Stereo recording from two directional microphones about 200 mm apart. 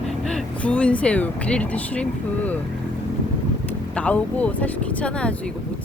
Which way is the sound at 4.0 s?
5° left (ahead or behind).